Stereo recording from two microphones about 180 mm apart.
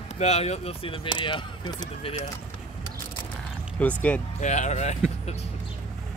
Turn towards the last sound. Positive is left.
turn(degrees=40)  # may be behind; listen again after turning